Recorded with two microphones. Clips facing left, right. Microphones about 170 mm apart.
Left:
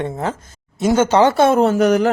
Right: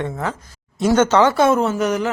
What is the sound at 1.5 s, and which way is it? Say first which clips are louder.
Speech: left 5 dB; 55° left (ahead or behind).